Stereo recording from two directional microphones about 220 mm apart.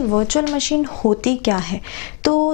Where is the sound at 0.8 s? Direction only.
25° left (ahead or behind).